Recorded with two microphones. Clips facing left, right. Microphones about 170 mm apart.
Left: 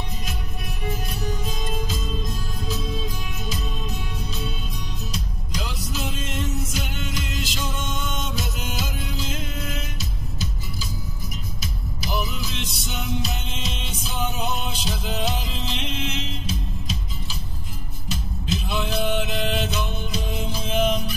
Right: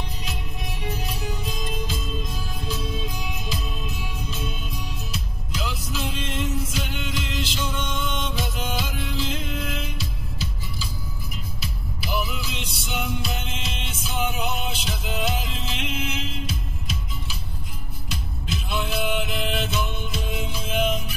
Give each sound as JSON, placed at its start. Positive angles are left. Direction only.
{"t": 0.8, "sound": "music", "side_deg": 45}
{"t": 5.1, "sound": "music", "side_deg": 40}
{"t": 18.1, "sound": "music", "side_deg": 40}